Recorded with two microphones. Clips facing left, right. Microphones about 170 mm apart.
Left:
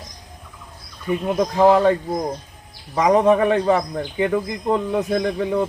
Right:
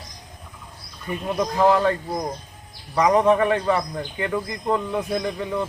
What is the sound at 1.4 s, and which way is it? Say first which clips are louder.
A man's voice: left 3 dB; 25° left (ahead or behind).